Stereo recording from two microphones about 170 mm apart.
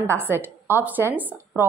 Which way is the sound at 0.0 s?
15° right (ahead or behind).